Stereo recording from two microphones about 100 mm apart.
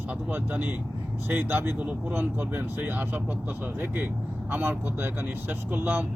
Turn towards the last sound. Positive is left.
turn(degrees=-20)  # may be behind; listen again after turning